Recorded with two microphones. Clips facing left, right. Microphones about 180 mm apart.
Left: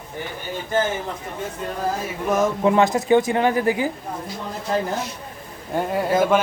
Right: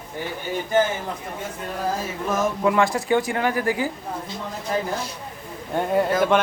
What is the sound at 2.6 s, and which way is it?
Speech, 20° left (ahead or behind).